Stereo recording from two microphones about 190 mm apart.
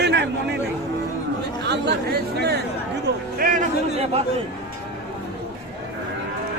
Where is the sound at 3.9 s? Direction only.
35° right (ahead or behind).